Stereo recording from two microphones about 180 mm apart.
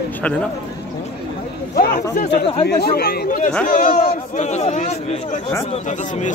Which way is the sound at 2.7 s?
60° left (ahead or behind).